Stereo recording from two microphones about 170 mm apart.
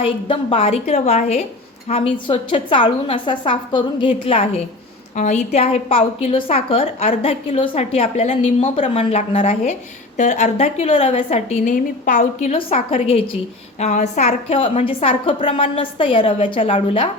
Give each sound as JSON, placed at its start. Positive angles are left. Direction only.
{"t": 0.0, "sound": "a woman's voice", "side_deg": 35}
{"t": 5.1, "sound": "a woman's voice", "side_deg": 45}